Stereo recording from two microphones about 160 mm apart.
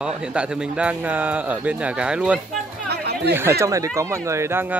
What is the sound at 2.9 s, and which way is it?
Chatter, 90° right.